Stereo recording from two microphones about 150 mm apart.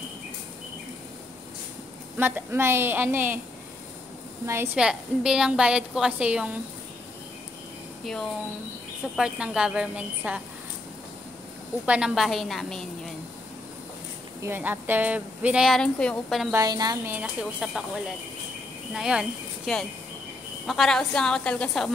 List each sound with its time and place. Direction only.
2.1 s speech: 15° right (ahead or behind)
4.7 s a woman's voice: 5° right (ahead or behind)
8.0 s a woman's voice: 5° left (ahead or behind)
11.8 s a woman's voice: 5° right (ahead or behind)
14.4 s speech: 15° right (ahead or behind)
16.5 s a woman's voice: 25° right (ahead or behind)
17.1 s a woman's voice: 5° right (ahead or behind)
18.9 s a woman's voice: 5° right (ahead or behind)